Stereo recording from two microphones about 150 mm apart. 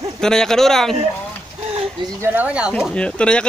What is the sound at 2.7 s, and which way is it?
Speech, 5° left (ahead or behind).